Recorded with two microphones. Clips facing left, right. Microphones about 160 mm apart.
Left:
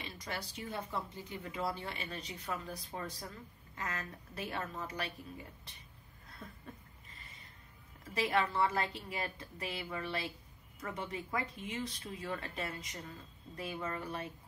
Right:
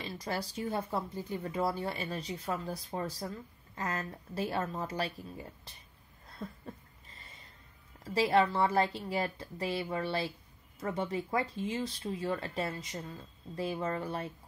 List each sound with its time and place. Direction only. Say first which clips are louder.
0.0 s speech: right 6 dB; 35° right (ahead or behind)
8.0 s speech: right 6 dB; 30° right (ahead or behind)